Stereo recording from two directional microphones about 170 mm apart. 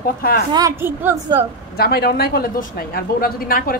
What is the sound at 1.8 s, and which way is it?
A woman's voice, 65° left (ahead or behind).